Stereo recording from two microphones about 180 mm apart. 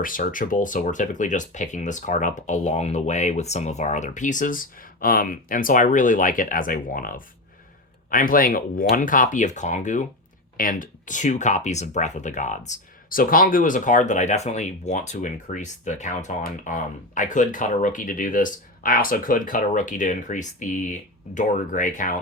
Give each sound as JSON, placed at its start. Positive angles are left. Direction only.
{"t": 0.0, "sound": "speech", "side_deg": 50}